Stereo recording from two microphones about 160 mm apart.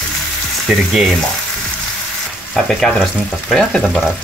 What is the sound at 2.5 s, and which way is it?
Speech, centre (ahead or behind).